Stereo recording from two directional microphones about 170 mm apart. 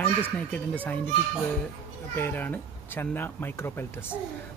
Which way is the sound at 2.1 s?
15° left (ahead or behind).